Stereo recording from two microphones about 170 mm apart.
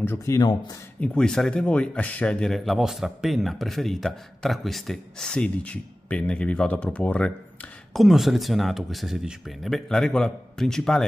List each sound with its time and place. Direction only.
0.0 s speech: 15° left (ahead or behind)
1.0 s a man's voice: 5° left (ahead or behind)